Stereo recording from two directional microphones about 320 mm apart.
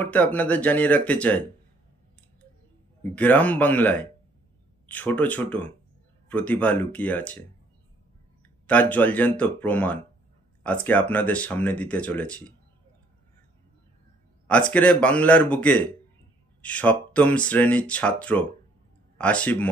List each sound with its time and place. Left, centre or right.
0.0 s speech: centre
3.0 s speech: centre
8.6 s speech: centre
14.5 s speech: centre